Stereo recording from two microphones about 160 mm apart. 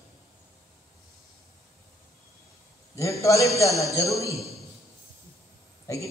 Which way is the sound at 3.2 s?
20° left (ahead or behind).